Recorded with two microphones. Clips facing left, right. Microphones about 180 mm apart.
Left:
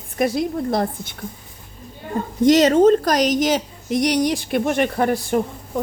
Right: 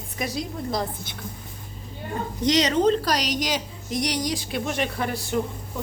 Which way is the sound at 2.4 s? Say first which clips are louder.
Left 8 dB; 50° left (ahead or behind).